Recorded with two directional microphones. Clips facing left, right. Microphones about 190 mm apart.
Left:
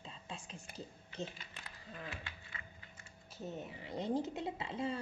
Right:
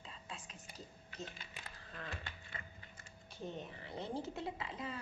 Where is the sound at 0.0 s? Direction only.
30° left (ahead or behind).